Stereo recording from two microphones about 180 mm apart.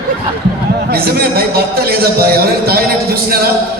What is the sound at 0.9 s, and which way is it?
A man's voice, 60° right (ahead or behind).